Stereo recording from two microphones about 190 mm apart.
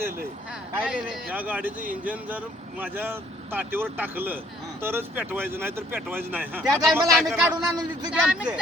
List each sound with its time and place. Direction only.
0.8 s a man's voice: 10° right (ahead or behind)
8.1 s speech: 5° right (ahead or behind)